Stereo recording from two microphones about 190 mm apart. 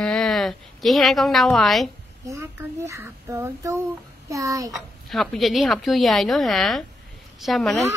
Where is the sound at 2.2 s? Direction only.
15° right (ahead or behind).